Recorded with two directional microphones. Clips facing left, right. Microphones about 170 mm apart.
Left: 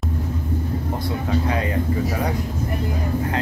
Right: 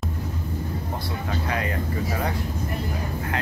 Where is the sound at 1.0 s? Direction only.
20° left (ahead or behind).